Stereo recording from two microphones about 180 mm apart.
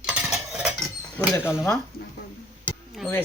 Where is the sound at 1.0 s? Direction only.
15° left (ahead or behind).